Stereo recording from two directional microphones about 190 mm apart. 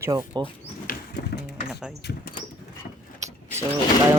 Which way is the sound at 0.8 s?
60° left (ahead or behind).